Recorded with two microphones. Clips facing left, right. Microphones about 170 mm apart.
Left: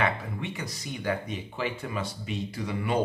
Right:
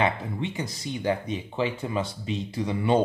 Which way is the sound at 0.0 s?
25° right (ahead or behind).